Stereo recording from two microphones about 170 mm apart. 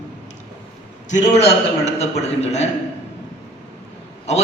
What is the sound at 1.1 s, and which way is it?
A man's voice, 40° left (ahead or behind).